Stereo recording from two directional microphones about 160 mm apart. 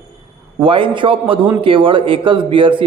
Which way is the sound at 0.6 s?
30° right (ahead or behind).